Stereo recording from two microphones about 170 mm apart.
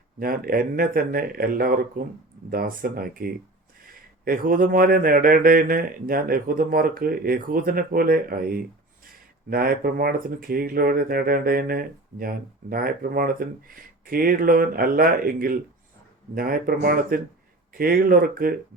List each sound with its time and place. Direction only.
0.2 s speech: 60° right (ahead or behind)